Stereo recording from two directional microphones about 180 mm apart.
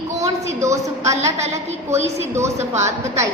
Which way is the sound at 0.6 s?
15° right (ahead or behind).